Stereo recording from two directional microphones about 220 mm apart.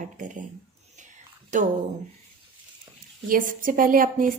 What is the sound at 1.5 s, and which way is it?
Speech, 35° right (ahead or behind).